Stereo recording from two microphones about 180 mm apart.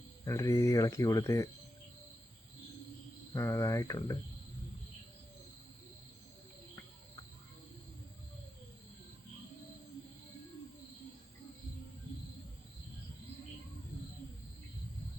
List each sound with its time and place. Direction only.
0.3 s speech: 15° left (ahead or behind)
3.3 s speech: 15° left (ahead or behind)